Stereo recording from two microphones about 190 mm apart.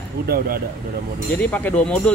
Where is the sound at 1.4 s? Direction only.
10° left (ahead or behind).